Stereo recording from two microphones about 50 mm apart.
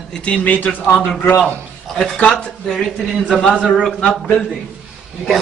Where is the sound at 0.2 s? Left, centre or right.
Left.